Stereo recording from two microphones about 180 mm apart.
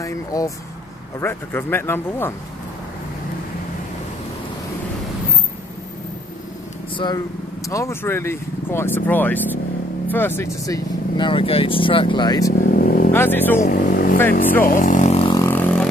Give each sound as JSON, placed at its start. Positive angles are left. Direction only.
{"t": 0.0, "sound": "speech", "side_deg": 20}
{"t": 7.7, "sound": "speech", "side_deg": 15}
{"t": 12.7, "sound": "vehicle", "side_deg": 55}
{"t": 13.1, "sound": "speech", "side_deg": 10}
{"t": 13.7, "sound": "speech", "side_deg": 50}
{"t": 15.3, "sound": "a sound", "side_deg": 10}